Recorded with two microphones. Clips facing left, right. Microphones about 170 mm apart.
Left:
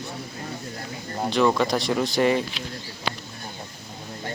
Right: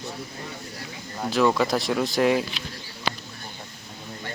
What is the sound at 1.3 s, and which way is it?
Speech, centre (ahead or behind).